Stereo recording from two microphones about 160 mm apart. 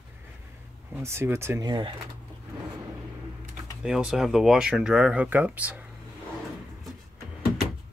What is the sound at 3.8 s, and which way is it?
Speech, 5° right (ahead or behind).